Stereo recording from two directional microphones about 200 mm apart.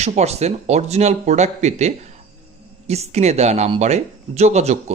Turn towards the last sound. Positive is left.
turn(degrees=-35)  # may be behind; listen again after turning